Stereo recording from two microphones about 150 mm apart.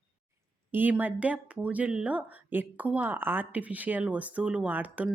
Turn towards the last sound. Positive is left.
turn(degrees=-10)  # may be behind; listen again after turning